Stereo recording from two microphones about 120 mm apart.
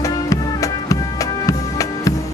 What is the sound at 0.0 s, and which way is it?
Music, 30° left (ahead or behind).